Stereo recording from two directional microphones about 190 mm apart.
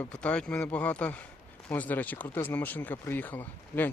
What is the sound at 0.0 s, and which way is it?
Speech, 5° left (ahead or behind).